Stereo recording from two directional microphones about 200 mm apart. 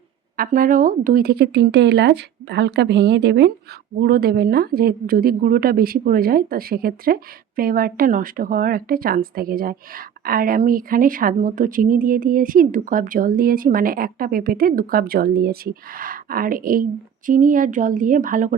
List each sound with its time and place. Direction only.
0.3 s a woman's voice: 45° right (ahead or behind)